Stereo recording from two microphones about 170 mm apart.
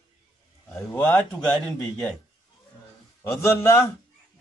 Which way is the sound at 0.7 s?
10° left (ahead or behind).